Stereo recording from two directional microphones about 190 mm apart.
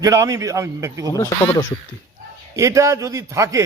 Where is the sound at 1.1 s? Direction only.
20° left (ahead or behind).